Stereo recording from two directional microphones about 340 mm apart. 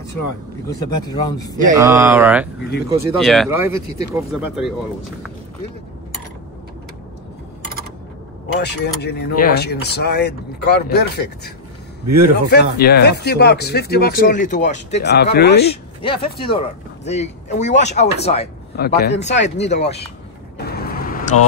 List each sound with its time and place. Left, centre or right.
0.7 s speech: centre
1.7 s speech: centre
8.5 s speech: left
15.7 s speech: centre
20.5 s vehicle: left